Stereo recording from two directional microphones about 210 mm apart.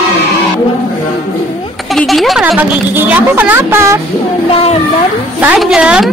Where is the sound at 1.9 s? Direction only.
Centre (ahead or behind).